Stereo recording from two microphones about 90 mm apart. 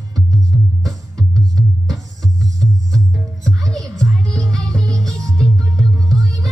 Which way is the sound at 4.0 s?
40° right (ahead or behind).